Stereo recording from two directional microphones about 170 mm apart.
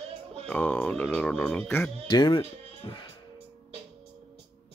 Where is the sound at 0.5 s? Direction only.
10° left (ahead or behind).